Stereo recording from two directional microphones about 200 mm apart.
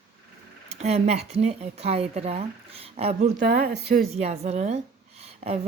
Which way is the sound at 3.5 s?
50° right (ahead or behind).